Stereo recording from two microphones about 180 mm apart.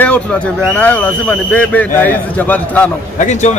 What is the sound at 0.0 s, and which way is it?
Speech, 5° left (ahead or behind).